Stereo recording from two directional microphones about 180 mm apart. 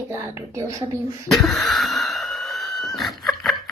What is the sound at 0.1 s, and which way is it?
Speech, 15° right (ahead or behind).